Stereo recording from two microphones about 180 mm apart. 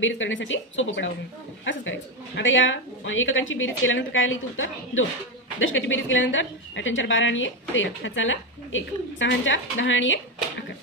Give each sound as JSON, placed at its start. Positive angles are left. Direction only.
{"t": 0.0, "sound": "a woman's voice", "side_deg": 90}